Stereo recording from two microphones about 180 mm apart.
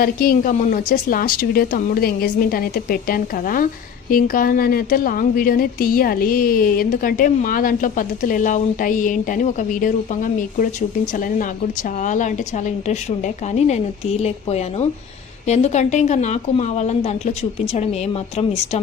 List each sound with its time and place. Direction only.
0.0 s a woman's voice: 55° left (ahead or behind); by 18.8 s 35° left (ahead or behind)